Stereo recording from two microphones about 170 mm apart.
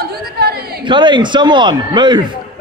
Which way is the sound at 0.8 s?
25° right (ahead or behind).